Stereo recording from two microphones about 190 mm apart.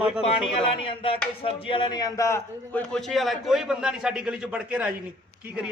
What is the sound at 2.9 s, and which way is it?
A man's voice, centre (ahead or behind).